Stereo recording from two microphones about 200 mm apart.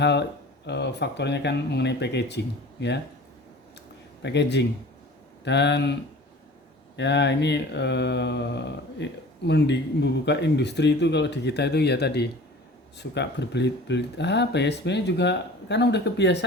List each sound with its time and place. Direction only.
0.0 s speech: 60° left (ahead or behind)
4.2 s speech: 60° left (ahead or behind)